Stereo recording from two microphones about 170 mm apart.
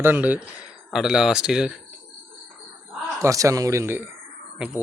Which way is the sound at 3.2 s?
20° right (ahead or behind).